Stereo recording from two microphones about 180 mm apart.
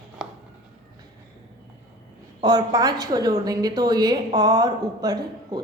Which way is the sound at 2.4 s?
20° right (ahead or behind).